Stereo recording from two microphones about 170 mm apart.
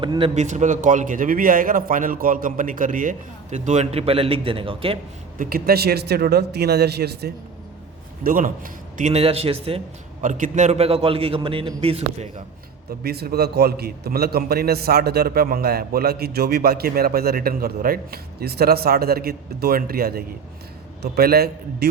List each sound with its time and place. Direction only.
0.0 s a man's voice: 30° right (ahead or behind)
0.4 s a man's voice: 45° right (ahead or behind)
5.4 s speech: 60° right (ahead or behind)
8.2 s a man's voice: 55° right (ahead or behind); by 10.2 s 35° right (ahead or behind)
10.2 s a man's voice: 50° right (ahead or behind)
13.0 s a man's voice: 65° right (ahead or behind)